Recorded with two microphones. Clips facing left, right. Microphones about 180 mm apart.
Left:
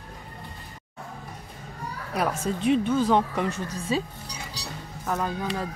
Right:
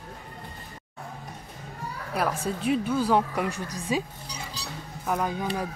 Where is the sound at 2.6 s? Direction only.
5° right (ahead or behind).